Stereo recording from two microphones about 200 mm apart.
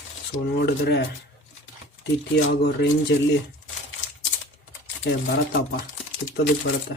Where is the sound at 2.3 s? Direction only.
60° left (ahead or behind).